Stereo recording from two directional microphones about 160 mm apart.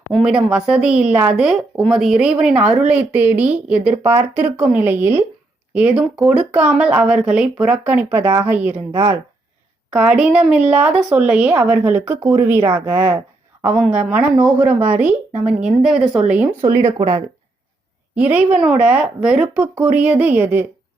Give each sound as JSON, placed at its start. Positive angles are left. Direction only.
{"t": 0.0, "sound": "a woman's voice", "side_deg": 0}
{"t": 8.1, "sound": "a woman's voice", "side_deg": -15}
{"t": 8.9, "sound": "speech", "side_deg": -35}
{"t": 9.9, "sound": "a woman's voice", "side_deg": -5}
{"t": 18.1, "sound": "a woman's voice", "side_deg": -10}